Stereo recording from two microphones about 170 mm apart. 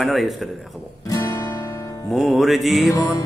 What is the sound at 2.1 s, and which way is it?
Speech, centre (ahead or behind).